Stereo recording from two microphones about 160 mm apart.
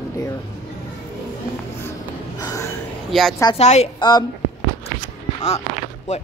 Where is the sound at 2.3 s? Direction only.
20° left (ahead or behind).